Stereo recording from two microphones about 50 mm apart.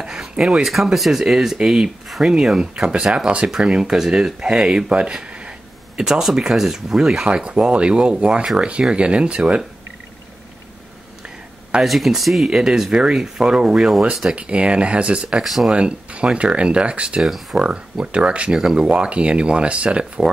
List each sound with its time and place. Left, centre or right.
0.0 s speech: centre
11.8 s speech: centre
14.3 s speech: right
15.4 s speech: centre
15.7 s speech: right
17.2 s speech: centre
17.6 s speech: centre